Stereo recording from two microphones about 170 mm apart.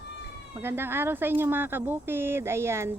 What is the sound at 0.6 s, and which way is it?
A woman's voice, 15° right (ahead or behind).